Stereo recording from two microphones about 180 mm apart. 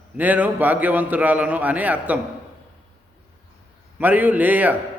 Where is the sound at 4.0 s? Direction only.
10° right (ahead or behind).